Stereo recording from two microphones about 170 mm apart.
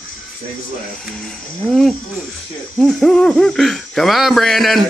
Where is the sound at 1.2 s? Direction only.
5° left (ahead or behind).